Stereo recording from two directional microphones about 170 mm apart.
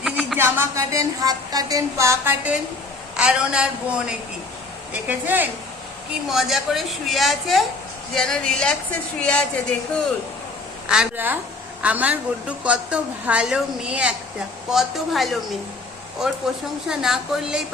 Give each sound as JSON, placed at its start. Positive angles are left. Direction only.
{"t": 0.0, "sound": "a sound", "side_deg": 0}
{"t": 0.3, "sound": "a woman's voice", "side_deg": -15}
{"t": 5.0, "sound": "a woman's voice", "side_deg": -10}
{"t": 10.8, "sound": "a woman's voice", "side_deg": -5}
{"t": 16.9, "sound": "a woman's voice", "side_deg": -5}